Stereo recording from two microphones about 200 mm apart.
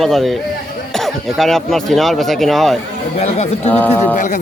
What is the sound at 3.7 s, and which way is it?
Speech, 10° left (ahead or behind).